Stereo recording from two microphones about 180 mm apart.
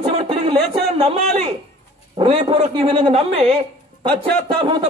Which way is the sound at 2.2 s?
30° right (ahead or behind).